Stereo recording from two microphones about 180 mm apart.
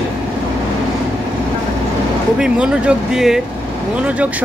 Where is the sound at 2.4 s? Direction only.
5° right (ahead or behind).